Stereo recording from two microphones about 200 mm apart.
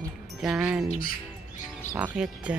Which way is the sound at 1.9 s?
5° right (ahead or behind).